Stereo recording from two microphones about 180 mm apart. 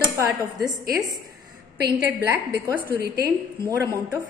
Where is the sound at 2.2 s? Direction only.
10° right (ahead or behind).